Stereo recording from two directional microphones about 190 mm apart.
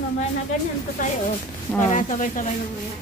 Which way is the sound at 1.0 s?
40° left (ahead or behind).